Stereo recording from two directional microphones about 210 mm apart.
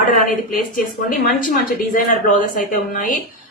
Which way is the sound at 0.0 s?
40° left (ahead or behind).